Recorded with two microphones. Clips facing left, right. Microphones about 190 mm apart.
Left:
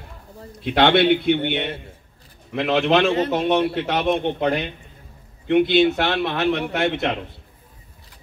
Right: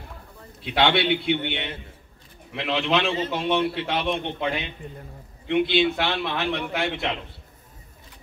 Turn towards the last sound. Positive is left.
turn(degrees=45)  # may be behind; listen again after turning